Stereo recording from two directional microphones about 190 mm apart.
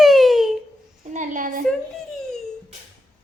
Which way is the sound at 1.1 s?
40° right (ahead or behind).